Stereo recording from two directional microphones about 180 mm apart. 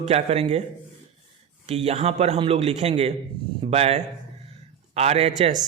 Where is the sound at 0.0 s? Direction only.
35° right (ahead or behind).